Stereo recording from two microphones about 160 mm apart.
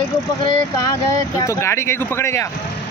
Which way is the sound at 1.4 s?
15° left (ahead or behind).